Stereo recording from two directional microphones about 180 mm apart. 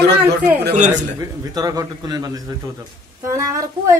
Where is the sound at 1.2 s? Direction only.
20° right (ahead or behind).